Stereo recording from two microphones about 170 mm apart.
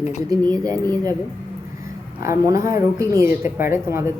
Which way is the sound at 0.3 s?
20° right (ahead or behind).